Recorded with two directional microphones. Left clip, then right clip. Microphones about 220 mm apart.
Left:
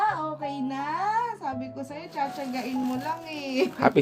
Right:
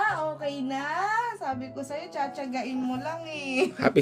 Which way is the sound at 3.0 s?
30° right (ahead or behind).